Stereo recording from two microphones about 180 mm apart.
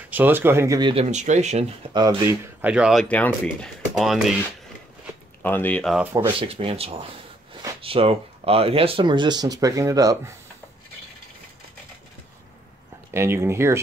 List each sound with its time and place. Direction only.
0.1 s speech: 10° right (ahead or behind)
1.1 s speech: 40° right (ahead or behind)
2.0 s speech: 20° right (ahead or behind)
2.6 s speech: 5° right (ahead or behind)
5.4 s speech: 10° left (ahead or behind)
6.1 s speech: 25° right (ahead or behind)
13.1 s speech: 15° right (ahead or behind)